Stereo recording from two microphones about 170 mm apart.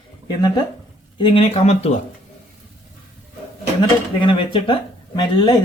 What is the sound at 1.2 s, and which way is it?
Speech, 30° left (ahead or behind).